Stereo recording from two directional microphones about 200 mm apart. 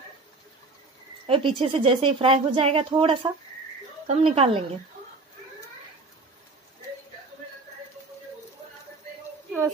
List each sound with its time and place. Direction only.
1.2 s a woman's voice: 25° right (ahead or behind)